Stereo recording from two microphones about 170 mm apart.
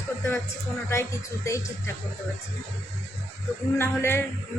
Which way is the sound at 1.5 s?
20° left (ahead or behind).